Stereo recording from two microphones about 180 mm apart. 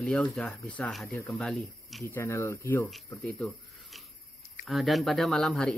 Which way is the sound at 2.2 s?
15° left (ahead or behind).